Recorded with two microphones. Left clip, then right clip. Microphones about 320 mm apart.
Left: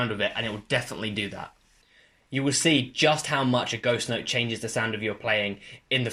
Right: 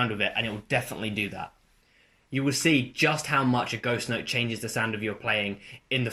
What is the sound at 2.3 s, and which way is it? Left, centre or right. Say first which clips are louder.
Speech: left 1 dB; centre.